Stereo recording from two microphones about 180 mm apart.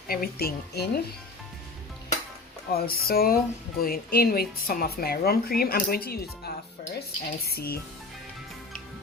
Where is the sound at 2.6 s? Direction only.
55° left (ahead or behind).